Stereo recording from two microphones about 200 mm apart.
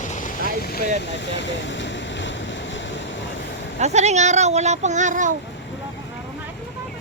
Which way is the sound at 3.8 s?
35° right (ahead or behind).